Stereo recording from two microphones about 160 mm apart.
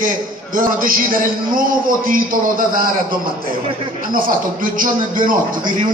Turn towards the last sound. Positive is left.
turn(degrees=-60)  # may be behind; listen again after turning